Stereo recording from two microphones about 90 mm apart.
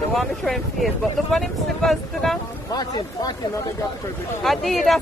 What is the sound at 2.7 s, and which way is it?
Speech, 50° left (ahead or behind).